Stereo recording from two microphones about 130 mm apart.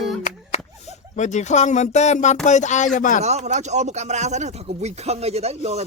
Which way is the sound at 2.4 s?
65° left (ahead or behind).